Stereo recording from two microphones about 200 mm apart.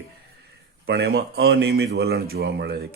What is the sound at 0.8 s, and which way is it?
A man's voice, 55° right (ahead or behind).